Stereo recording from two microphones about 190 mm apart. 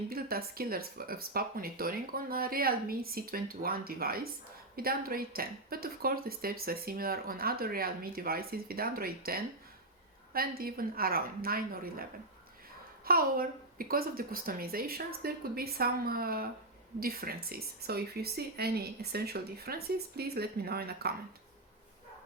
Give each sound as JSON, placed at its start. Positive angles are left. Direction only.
{"t": 0.1, "sound": "speech", "side_deg": -50}
{"t": 13.1, "sound": "speech", "side_deg": -50}